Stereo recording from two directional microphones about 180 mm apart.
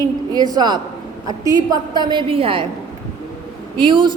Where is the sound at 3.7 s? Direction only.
25° right (ahead or behind).